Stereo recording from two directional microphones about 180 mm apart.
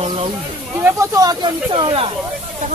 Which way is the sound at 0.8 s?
20° right (ahead or behind).